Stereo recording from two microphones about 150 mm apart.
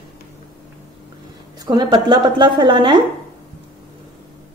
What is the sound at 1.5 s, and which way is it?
A woman's voice, 25° right (ahead or behind).